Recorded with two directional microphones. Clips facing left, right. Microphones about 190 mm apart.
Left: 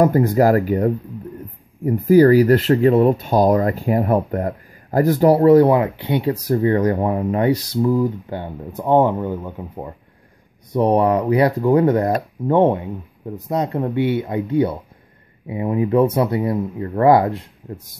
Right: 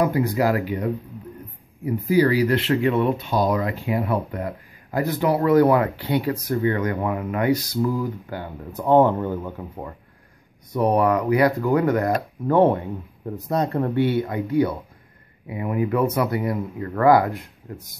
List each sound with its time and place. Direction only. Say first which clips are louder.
0.0 s speech: left 6 dB; 45° left (ahead or behind); by 6.3 s 20° left (ahead or behind)
6.3 s speech: left 5 dB; 35° left (ahead or behind); by 9.9 s 15° left (ahead or behind)
10.7 s speech: left 3 dB; 30° left (ahead or behind)